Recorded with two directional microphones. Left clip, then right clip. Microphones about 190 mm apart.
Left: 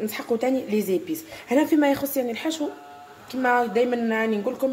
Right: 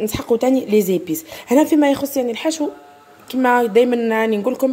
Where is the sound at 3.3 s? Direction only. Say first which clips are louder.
Right 7 dB; 50° right (ahead or behind).